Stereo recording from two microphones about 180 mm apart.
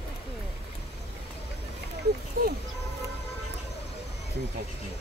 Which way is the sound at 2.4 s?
55° right (ahead or behind).